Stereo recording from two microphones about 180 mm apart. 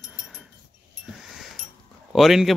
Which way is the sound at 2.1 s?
Centre (ahead or behind).